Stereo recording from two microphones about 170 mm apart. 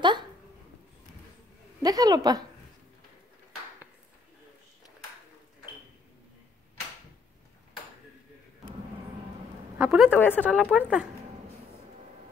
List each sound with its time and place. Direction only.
1.8 s a woman's voice: 20° right (ahead or behind)
9.8 s a woman's voice: 5° right (ahead or behind)
10.1 s a woman's voice: 10° left (ahead or behind)
10.4 s a woman's voice: 5° right (ahead or behind)